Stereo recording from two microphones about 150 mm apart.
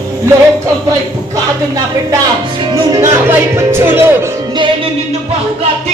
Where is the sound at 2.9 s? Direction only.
25° right (ahead or behind).